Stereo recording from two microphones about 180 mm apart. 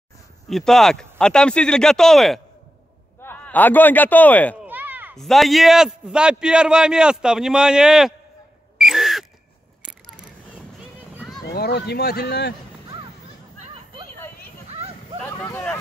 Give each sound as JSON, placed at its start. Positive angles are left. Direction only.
{"t": 0.5, "sound": "a man's voice", "side_deg": 0}
{"t": 4.6, "sound": "a sound", "side_deg": -10}
{"t": 5.1, "sound": "a man's voice", "side_deg": 0}
{"t": 8.7, "sound": "a sound", "side_deg": 0}
{"t": 11.4, "sound": "speech", "side_deg": 65}
{"t": 15.2, "sound": "speech", "side_deg": 15}